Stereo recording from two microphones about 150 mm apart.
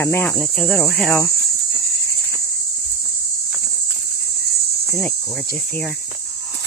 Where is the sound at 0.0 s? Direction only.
15° left (ahead or behind).